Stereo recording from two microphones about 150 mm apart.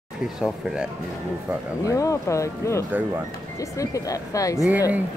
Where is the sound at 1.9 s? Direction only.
20° left (ahead or behind).